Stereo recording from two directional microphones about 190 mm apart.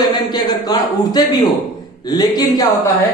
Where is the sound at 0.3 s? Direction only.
20° left (ahead or behind).